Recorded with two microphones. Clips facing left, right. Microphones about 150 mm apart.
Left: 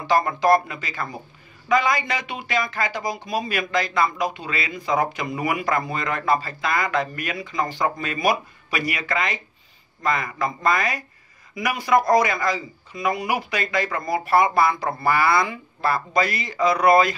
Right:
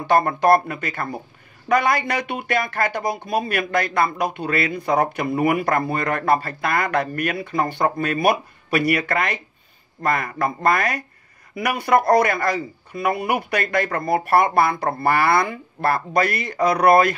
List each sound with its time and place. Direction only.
0.0 s speech: 55° right (ahead or behind)